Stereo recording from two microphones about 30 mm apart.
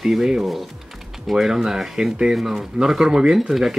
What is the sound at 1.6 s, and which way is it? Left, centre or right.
Speech, centre.